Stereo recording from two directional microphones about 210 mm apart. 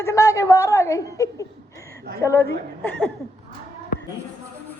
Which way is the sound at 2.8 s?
10° left (ahead or behind).